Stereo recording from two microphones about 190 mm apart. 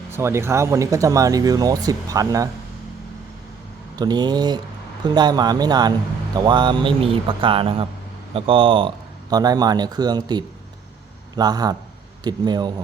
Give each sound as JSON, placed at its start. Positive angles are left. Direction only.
{"t": 0.1, "sound": "speech", "side_deg": -15}
{"t": 3.9, "sound": "speech", "side_deg": -20}